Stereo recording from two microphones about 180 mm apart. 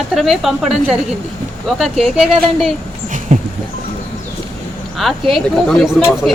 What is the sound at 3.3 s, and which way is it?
Music, 45° right (ahead or behind).